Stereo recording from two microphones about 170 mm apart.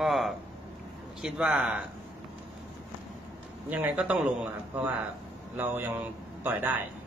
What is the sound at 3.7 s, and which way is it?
A man's voice, 10° right (ahead or behind).